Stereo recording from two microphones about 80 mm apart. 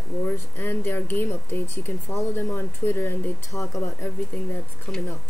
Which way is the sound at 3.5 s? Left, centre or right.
Left.